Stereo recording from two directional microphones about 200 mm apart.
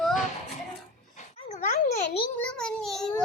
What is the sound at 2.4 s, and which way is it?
Speech, 5° left (ahead or behind).